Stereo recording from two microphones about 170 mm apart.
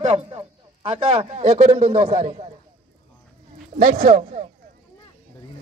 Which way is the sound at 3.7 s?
50° right (ahead or behind).